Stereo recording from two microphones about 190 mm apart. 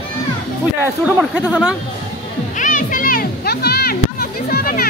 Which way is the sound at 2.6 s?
45° left (ahead or behind).